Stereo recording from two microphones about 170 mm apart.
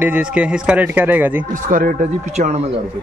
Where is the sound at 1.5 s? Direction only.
50° right (ahead or behind).